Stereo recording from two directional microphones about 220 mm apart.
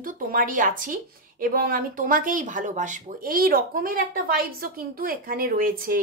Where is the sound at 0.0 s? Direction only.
40° right (ahead or behind).